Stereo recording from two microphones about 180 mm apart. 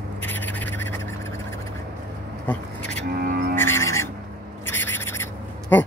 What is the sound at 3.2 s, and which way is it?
Music, 55° right (ahead or behind).